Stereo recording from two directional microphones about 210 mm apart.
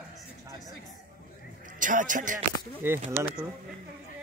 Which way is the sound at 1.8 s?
40° right (ahead or behind).